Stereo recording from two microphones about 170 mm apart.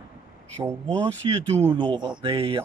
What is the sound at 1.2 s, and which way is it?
Speech, 30° right (ahead or behind).